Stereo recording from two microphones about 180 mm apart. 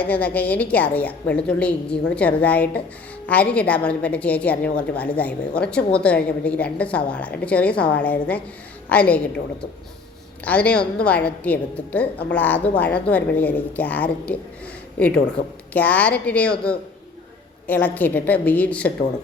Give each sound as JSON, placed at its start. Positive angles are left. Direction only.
{"t": 0.0, "sound": "a woman's voice", "side_deg": 10}
{"t": 15.4, "sound": "speech", "side_deg": 45}
{"t": 15.7, "sound": "a woman's voice", "side_deg": 10}